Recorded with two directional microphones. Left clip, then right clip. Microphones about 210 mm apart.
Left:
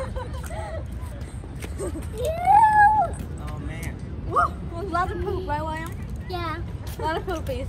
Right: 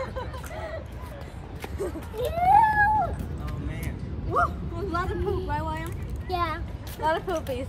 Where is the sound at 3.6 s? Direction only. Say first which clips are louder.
Left 1 dB; 30° left (ahead or behind).